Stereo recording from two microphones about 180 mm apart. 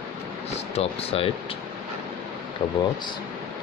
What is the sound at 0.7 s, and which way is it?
Speech, 35° left (ahead or behind).